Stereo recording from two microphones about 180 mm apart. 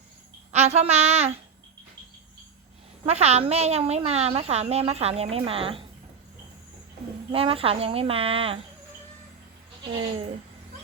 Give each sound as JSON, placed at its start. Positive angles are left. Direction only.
{"t": 0.5, "sound": "a woman's voice", "side_deg": -35}
{"t": 3.1, "sound": "a woman's voice", "side_deg": -35}
{"t": 7.3, "sound": "a woman's voice", "side_deg": -30}